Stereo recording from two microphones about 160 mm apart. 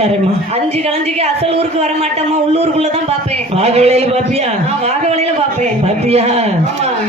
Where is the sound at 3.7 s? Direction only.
40° right (ahead or behind).